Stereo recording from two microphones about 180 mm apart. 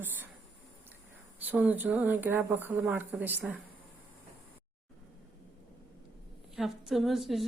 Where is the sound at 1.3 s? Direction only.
10° right (ahead or behind).